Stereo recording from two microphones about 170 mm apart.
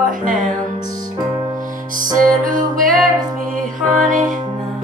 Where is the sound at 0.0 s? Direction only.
50° right (ahead or behind).